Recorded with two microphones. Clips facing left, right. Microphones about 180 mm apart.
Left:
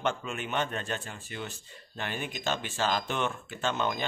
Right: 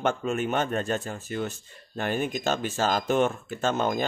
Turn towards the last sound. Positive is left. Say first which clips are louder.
# right 5 dB
turn(degrees=-45)  # may be behind; listen again after turning